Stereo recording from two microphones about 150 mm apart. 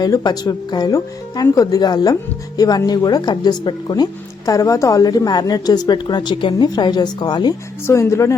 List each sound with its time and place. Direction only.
0.0 s a woman's voice: 30° left (ahead or behind)